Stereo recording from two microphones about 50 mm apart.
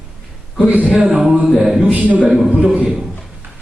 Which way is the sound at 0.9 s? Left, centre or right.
Centre.